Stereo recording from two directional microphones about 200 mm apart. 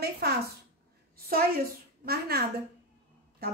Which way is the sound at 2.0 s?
50° right (ahead or behind).